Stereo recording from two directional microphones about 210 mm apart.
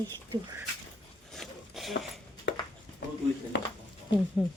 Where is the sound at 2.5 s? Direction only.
60° left (ahead or behind).